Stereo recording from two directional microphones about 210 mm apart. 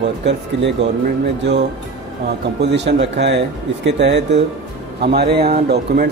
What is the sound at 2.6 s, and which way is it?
A man's voice, 55° right (ahead or behind).